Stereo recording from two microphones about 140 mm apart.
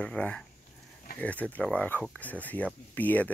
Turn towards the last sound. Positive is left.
turn(degrees=10)  # may be behind; listen again after turning